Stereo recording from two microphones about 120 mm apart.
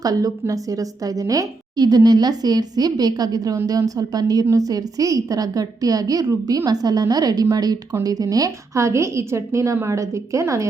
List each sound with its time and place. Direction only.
0.0 s a woman's voice: 30° right (ahead or behind)